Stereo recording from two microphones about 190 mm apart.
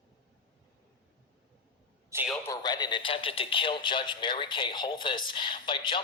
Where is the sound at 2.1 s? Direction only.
15° right (ahead or behind).